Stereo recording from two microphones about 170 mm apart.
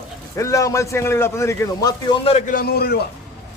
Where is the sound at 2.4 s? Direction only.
60° left (ahead or behind).